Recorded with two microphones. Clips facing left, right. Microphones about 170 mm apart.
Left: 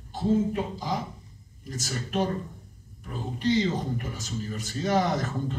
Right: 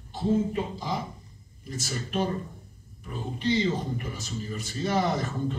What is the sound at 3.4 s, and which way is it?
Speech, 45° left (ahead or behind).